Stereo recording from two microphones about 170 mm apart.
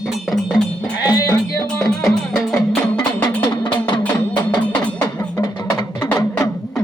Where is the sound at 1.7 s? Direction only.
Centre (ahead or behind).